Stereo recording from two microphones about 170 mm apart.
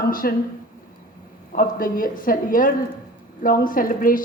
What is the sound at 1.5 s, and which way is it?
A woman's voice, 55° left (ahead or behind).